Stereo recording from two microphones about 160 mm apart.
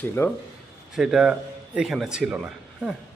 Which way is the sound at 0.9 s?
5° right (ahead or behind).